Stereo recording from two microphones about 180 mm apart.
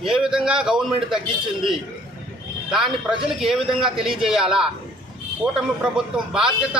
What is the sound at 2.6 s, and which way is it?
A man's voice, 5° right (ahead or behind).